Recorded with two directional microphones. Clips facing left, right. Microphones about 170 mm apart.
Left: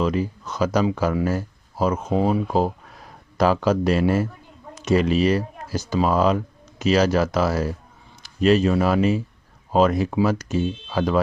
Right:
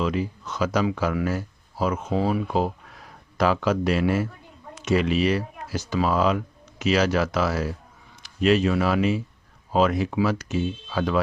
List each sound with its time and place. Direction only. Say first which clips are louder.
0.0 s speech: left 3 dB; 40° left (ahead or behind)